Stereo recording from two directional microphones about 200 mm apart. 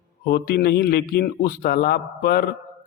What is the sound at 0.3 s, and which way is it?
A man's voice, 50° left (ahead or behind).